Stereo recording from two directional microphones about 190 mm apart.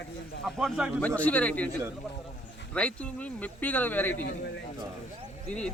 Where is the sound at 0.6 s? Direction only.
Centre (ahead or behind).